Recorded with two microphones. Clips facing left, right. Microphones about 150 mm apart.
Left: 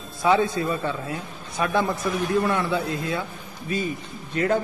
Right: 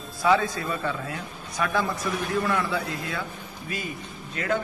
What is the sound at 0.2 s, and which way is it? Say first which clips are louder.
Speech: left 2 dB; 25° left (ahead or behind).